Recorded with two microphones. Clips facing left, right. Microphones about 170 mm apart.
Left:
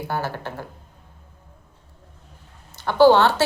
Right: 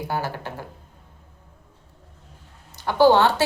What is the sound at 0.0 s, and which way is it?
Speech, 15° right (ahead or behind).